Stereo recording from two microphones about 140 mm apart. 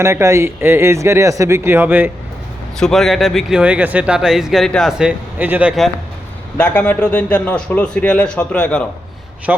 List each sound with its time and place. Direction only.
0.0 s speech: 20° right (ahead or behind)
2.7 s speech: 5° left (ahead or behind)
6.6 s speech: 10° left (ahead or behind)
9.5 s a man's voice: 10° right (ahead or behind)